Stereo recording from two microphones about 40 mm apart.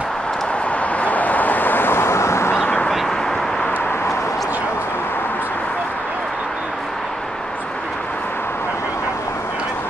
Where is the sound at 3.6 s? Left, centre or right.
Left.